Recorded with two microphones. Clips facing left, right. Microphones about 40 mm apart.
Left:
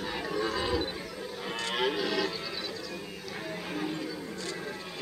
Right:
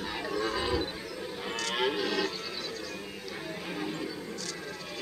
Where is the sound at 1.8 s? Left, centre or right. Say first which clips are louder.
Even; centre.